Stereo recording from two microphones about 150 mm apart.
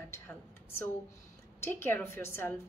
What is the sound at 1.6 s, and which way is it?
Speech, 15° left (ahead or behind).